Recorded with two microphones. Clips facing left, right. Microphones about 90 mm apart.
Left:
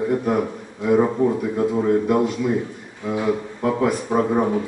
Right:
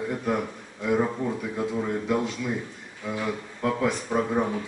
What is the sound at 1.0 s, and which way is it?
Speech, 25° left (ahead or behind).